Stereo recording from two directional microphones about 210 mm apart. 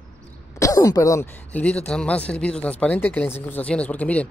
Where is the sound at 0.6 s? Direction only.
15° left (ahead or behind).